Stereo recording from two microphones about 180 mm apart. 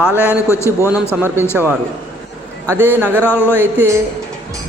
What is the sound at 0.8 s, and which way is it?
Speech, 10° right (ahead or behind).